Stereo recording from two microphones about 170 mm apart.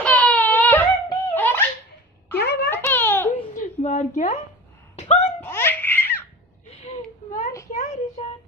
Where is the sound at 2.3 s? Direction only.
75° left (ahead or behind).